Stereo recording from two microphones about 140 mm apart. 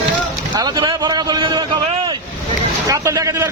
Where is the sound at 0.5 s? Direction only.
30° right (ahead or behind).